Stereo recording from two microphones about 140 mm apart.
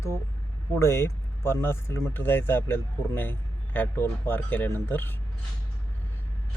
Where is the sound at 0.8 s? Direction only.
20° left (ahead or behind).